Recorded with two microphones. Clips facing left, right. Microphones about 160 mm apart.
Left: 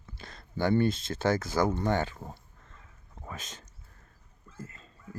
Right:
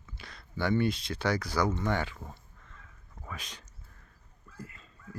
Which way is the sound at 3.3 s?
45° left (ahead or behind).